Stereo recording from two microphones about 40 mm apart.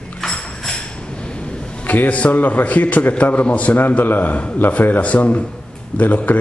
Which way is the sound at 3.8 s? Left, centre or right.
Left.